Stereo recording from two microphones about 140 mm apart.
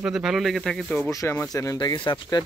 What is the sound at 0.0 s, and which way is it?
A man's voice, 5° right (ahead or behind).